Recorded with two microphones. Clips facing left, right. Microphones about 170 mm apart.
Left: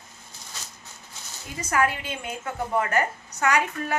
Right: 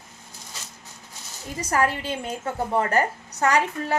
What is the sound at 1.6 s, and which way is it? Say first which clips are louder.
A woman's voice: right 1 dB; 35° right (ahead or behind).